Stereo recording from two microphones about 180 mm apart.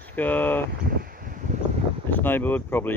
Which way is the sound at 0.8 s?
55° right (ahead or behind).